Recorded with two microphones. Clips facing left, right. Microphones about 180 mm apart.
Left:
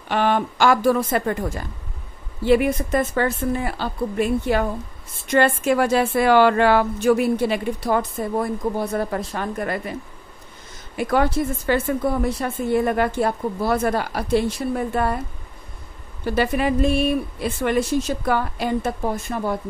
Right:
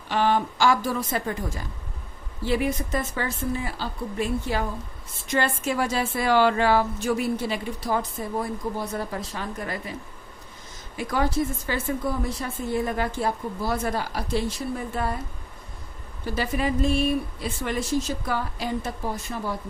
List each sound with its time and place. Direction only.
0.1 s speech: 60° left (ahead or behind)
11.0 s speech: 65° left (ahead or behind)
16.3 s speech: 65° left (ahead or behind)